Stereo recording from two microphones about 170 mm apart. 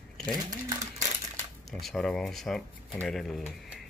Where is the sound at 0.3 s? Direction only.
20° right (ahead or behind).